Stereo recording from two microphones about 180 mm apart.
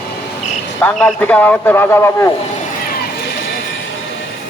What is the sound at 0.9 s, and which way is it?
A man's voice, 5° left (ahead or behind).